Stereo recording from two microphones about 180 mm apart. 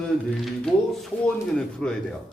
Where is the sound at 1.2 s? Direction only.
5° left (ahead or behind).